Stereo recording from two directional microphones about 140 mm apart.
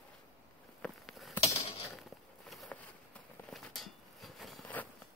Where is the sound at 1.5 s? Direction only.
45° left (ahead or behind).